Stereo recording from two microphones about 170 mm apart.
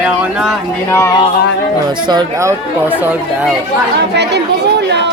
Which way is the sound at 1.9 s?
25° right (ahead or behind).